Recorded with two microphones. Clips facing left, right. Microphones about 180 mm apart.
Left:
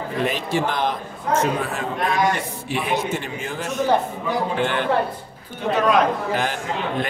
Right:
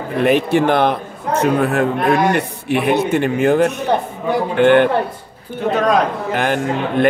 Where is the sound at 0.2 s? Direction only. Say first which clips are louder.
Right 9 dB; 60° right (ahead or behind).